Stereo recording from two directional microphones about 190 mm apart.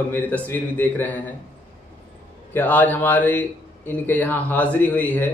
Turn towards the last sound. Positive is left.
turn(degrees=10)  # may be behind; listen again after turning